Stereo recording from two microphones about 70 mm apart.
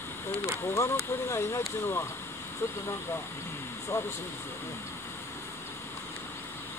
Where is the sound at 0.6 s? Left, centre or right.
Left.